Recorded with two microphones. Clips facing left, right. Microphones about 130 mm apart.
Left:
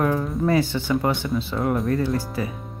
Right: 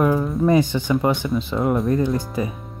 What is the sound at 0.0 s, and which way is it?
Music, 10° right (ahead or behind).